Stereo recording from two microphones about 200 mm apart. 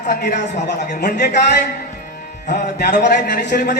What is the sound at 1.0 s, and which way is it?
Speech, 55° left (ahead or behind).